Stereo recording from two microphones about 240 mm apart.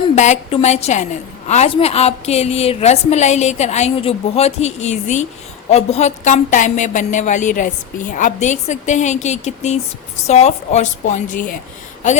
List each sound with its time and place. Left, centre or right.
0.2 s a woman's voice: left